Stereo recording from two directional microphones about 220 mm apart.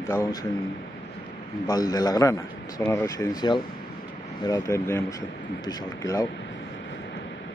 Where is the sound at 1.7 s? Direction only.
15° left (ahead or behind).